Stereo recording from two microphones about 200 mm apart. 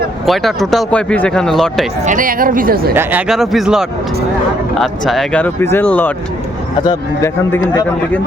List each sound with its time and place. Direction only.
0.3 s speech: centre (ahead or behind)
2.0 s speech: 45° right (ahead or behind)
2.9 s a man's voice: 10° right (ahead or behind); by 7.6 s 15° left (ahead or behind)